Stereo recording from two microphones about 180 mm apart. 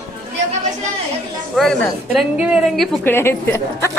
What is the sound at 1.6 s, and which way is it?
A woman's voice, centre (ahead or behind).